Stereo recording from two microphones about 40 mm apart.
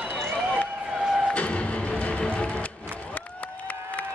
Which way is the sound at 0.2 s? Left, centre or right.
Centre.